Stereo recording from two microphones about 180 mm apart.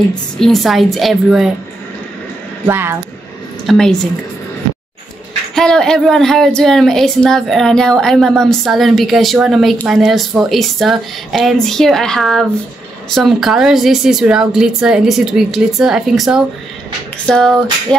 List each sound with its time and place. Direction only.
0.4 s a woman's voice: centre (ahead or behind)
2.6 s speech: 15° right (ahead or behind)
3.6 s a woman's voice: centre (ahead or behind)
5.5 s a woman's voice: 5° left (ahead or behind)